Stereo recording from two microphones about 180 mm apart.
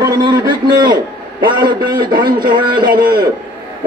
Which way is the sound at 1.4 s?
25° right (ahead or behind).